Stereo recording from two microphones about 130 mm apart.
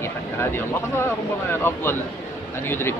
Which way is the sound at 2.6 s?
15° left (ahead or behind).